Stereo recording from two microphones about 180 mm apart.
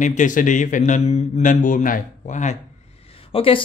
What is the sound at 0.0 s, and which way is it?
Speech, 45° left (ahead or behind).